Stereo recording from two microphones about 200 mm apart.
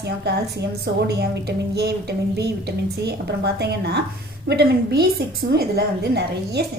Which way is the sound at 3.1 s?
55° right (ahead or behind).